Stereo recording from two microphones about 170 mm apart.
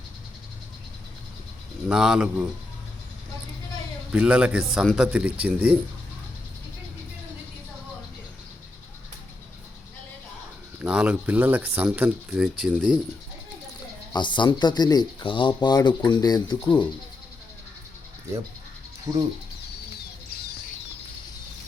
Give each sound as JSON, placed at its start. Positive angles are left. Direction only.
{"t": 1.9, "sound": "speech", "side_deg": -5}
{"t": 4.1, "sound": "speech", "side_deg": -5}
{"t": 10.8, "sound": "speech", "side_deg": -10}
{"t": 14.1, "sound": "speech", "side_deg": 25}
{"t": 19.1, "sound": "speech", "side_deg": -20}